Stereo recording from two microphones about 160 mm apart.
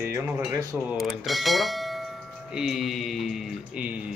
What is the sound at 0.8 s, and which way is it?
Speech, centre (ahead or behind).